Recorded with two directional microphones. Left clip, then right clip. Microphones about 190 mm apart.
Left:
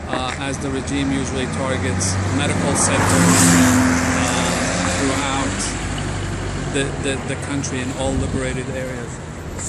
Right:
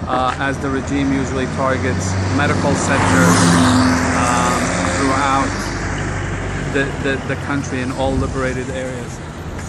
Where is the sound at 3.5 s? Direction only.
20° left (ahead or behind).